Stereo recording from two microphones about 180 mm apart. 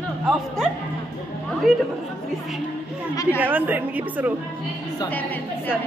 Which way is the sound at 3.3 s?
10° right (ahead or behind).